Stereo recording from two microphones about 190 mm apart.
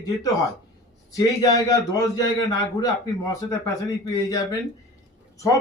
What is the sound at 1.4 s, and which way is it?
A man's voice, 20° left (ahead or behind).